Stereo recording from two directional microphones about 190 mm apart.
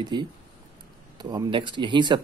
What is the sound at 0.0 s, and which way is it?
Speech, 25° right (ahead or behind).